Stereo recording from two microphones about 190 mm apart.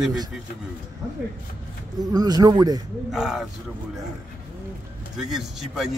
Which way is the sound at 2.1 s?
20° right (ahead or behind).